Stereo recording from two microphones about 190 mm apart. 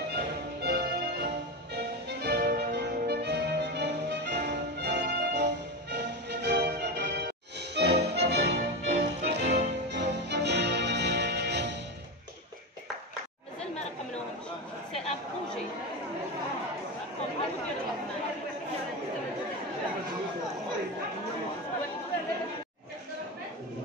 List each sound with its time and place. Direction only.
0.1 s music: 60° right (ahead or behind)